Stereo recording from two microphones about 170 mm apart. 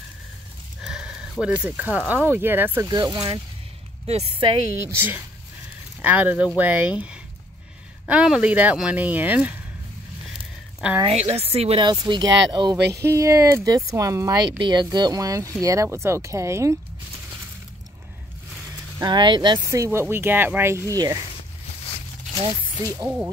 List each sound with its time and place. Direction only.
0.8 s a sound: 5° right (ahead or behind)
1.4 s speech: 5° right (ahead or behind)
2.9 s speech: 25° right (ahead or behind)
4.0 s a woman's voice: 35° right (ahead or behind)
4.8 s speech: 10° right (ahead or behind)
11.1 s speech: 40° right (ahead or behind); by 16.7 s 15° right (ahead or behind)
18.9 s speech: 25° right (ahead or behind)
22.9 s speech: 10° right (ahead or behind)